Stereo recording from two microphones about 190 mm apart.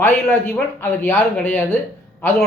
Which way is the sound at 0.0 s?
10° left (ahead or behind).